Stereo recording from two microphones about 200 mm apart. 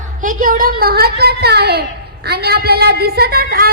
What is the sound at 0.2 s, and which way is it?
A woman's voice, 40° right (ahead or behind).